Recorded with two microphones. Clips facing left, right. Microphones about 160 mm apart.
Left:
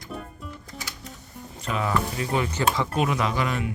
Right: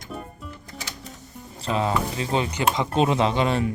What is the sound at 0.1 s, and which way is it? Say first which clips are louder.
Music: right 1 dB; centre (ahead or behind).